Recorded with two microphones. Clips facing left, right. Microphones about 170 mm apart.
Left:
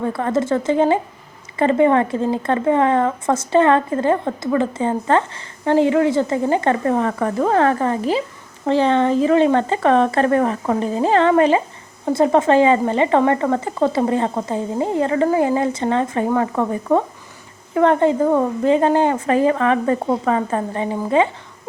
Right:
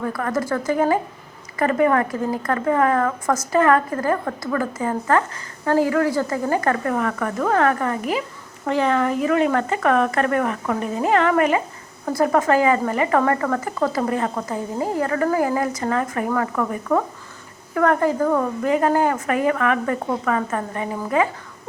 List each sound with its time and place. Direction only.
0.0 s a woman's voice: 25° left (ahead or behind)